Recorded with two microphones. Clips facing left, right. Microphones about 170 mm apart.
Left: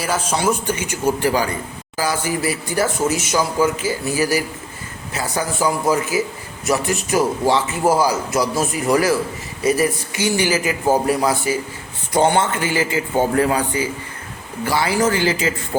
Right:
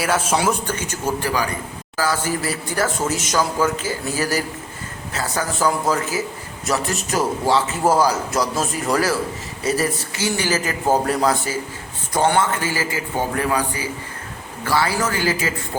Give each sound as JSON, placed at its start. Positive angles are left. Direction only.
{"t": 0.0, "sound": "speech", "side_deg": -5}
{"t": 0.7, "sound": "speech", "side_deg": 10}
{"t": 1.2, "sound": "a man's voice", "side_deg": 25}
{"t": 2.0, "sound": "a man's voice", "side_deg": 15}
{"t": 14.6, "sound": "a man's voice", "side_deg": 15}